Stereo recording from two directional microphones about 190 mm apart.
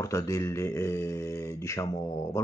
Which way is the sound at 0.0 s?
15° left (ahead or behind).